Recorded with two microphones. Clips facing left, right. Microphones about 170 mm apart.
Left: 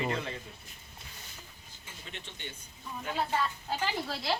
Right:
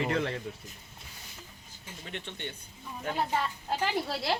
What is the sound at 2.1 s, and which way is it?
Speech, 60° right (ahead or behind).